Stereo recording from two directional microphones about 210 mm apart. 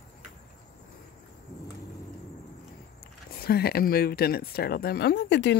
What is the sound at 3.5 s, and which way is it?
Speech, 45° left (ahead or behind).